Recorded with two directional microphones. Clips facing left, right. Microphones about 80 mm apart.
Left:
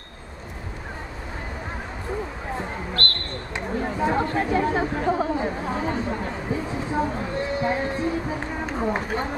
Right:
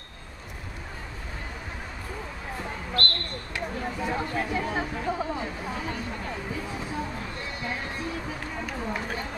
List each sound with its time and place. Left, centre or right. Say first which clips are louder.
3.5 s speech: left 5 dB; left